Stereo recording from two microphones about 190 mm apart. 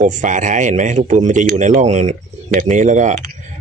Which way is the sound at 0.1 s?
40° right (ahead or behind).